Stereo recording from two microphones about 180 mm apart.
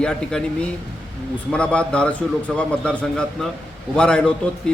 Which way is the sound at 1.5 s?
5° left (ahead or behind).